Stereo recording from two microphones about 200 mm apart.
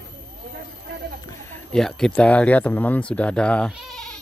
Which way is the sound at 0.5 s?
55° right (ahead or behind).